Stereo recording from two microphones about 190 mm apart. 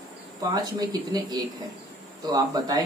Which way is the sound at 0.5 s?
20° right (ahead or behind).